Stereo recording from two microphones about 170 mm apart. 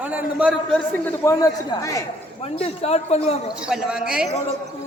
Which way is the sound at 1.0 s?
20° left (ahead or behind).